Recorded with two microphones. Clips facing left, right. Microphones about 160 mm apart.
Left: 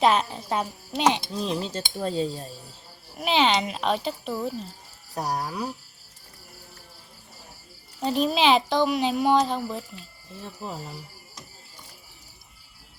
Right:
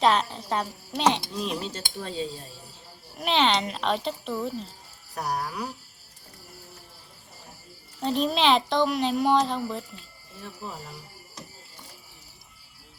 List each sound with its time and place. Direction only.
0.0 s speech: 5° left (ahead or behind)
1.4 s cutlery: 35° left (ahead or behind)
3.2 s speech: centre (ahead or behind)
5.1 s speech: 20° left (ahead or behind)
8.0 s speech: 5° left (ahead or behind)